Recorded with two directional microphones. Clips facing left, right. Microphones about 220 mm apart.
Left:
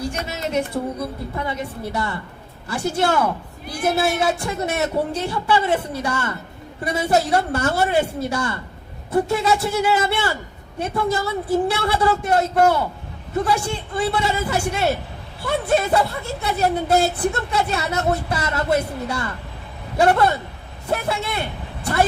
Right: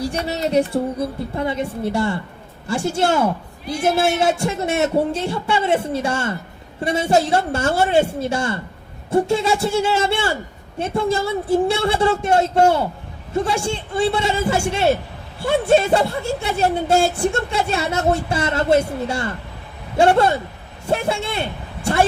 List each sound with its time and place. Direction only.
0.1 s a woman's voice: 35° right (ahead or behind)